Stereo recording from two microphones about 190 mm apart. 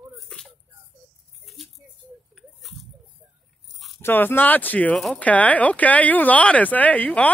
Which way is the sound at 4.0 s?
10° left (ahead or behind).